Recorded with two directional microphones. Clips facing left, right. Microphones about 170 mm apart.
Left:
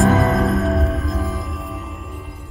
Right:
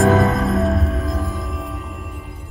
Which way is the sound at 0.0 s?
Centre (ahead or behind).